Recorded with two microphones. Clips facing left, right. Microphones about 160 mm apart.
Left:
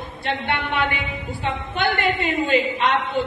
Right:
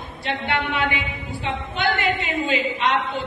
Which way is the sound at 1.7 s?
55° left (ahead or behind).